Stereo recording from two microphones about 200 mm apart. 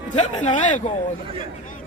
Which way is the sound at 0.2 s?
35° left (ahead or behind).